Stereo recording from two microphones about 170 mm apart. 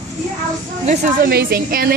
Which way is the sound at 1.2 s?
60° right (ahead or behind).